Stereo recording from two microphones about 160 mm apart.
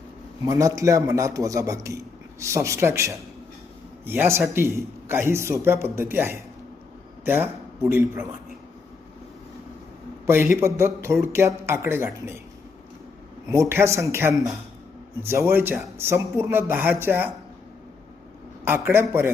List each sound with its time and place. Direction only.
0.4 s a man's voice: 20° right (ahead or behind)
10.2 s a man's voice: 15° right (ahead or behind)
13.5 s a man's voice: 15° right (ahead or behind)
18.6 s a man's voice: 15° right (ahead or behind)